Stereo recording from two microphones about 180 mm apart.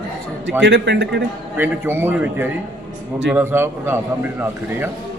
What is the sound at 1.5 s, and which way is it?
A man's voice, 10° right (ahead or behind).